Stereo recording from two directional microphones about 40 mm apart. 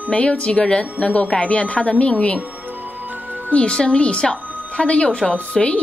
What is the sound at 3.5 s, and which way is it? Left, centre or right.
A woman's voice, left.